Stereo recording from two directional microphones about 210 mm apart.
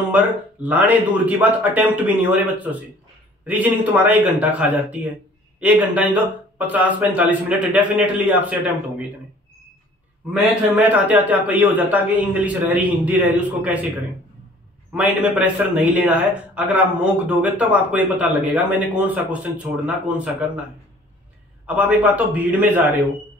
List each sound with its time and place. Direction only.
0.1 s a man's voice: 10° right (ahead or behind)
10.2 s a man's voice: 5° right (ahead or behind)
15.0 s a man's voice: 5° right (ahead or behind)
21.6 s a man's voice: 5° right (ahead or behind)